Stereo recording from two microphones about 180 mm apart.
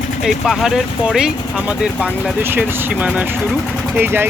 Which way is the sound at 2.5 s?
5° right (ahead or behind).